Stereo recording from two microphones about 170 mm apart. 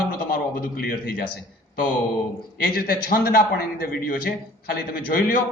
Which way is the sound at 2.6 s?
65° left (ahead or behind).